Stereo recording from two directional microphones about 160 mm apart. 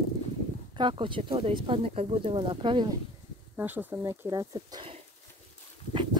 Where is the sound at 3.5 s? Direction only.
10° right (ahead or behind); by 4.9 s 30° right (ahead or behind).